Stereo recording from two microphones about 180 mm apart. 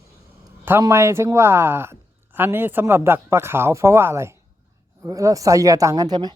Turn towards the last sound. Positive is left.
turn(degrees=-20)  # may be behind; listen again after turning